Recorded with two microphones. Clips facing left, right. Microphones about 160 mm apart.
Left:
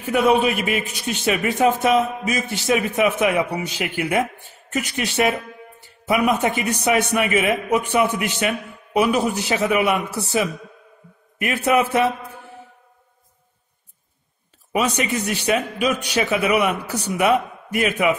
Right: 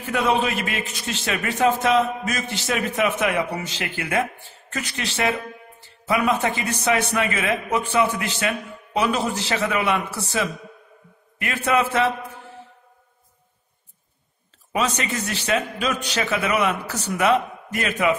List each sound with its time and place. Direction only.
0.4 s a man's voice: 15° left (ahead or behind)
14.7 s a man's voice: 10° left (ahead or behind)